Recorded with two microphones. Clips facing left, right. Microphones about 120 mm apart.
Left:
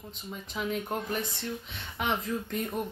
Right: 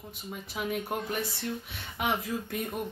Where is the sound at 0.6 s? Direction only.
10° right (ahead or behind).